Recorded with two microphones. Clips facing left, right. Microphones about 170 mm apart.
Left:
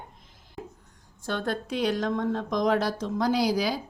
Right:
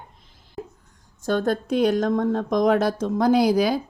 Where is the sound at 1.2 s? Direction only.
45° right (ahead or behind).